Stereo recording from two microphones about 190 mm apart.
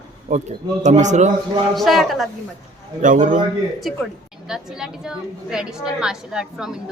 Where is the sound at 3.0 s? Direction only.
45° right (ahead or behind).